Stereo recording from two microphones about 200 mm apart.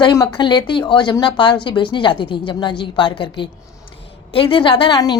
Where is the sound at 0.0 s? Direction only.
15° left (ahead or behind).